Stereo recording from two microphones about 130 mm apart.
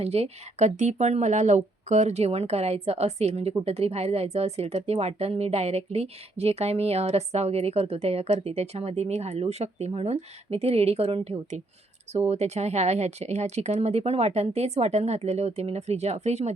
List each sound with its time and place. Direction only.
0.0 s speech: 55° right (ahead or behind)